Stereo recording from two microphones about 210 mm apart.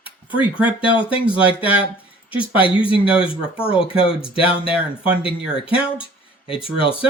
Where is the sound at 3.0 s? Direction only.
5° right (ahead or behind).